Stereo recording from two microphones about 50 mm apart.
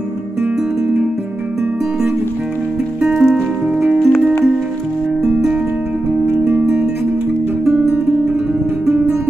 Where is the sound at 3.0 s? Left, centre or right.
Centre.